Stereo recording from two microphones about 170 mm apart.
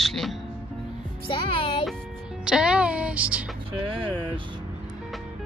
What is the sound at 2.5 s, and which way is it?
Speech, 5° right (ahead or behind).